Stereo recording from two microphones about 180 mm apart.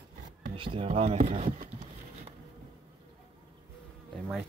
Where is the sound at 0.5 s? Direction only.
30° right (ahead or behind).